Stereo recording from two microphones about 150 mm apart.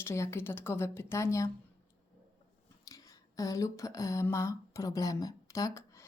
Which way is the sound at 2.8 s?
25° left (ahead or behind).